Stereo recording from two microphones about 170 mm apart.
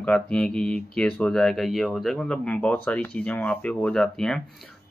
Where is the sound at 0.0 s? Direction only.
5° left (ahead or behind).